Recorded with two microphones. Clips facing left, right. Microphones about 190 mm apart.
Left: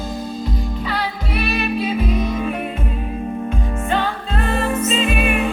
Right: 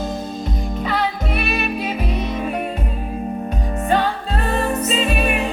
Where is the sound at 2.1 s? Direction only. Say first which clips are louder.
Left 3 dB; 50° left (ahead or behind).